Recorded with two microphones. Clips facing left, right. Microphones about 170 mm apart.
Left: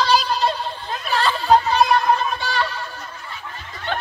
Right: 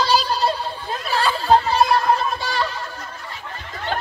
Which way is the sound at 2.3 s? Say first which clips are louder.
Even; 35° right (ahead or behind).